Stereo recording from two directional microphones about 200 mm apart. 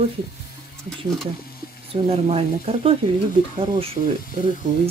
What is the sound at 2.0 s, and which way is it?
Speech, 30° right (ahead or behind).